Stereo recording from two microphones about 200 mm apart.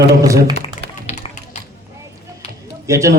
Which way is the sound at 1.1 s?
30° left (ahead or behind).